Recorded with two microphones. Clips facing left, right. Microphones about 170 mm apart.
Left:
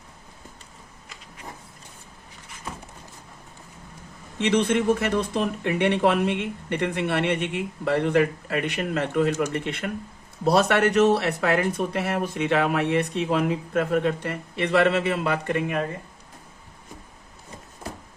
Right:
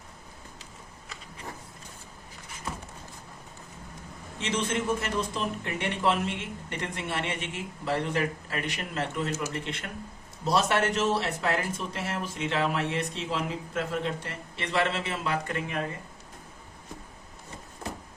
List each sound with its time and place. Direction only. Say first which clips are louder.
4.4 s speech: left 8 dB; 60° left (ahead or behind)